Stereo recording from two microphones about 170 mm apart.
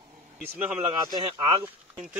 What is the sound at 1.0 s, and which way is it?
Speech, 25° right (ahead or behind).